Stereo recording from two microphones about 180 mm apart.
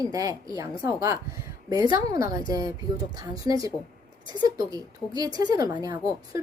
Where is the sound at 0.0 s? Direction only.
20° right (ahead or behind).